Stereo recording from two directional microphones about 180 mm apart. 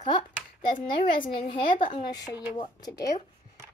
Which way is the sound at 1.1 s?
30° left (ahead or behind).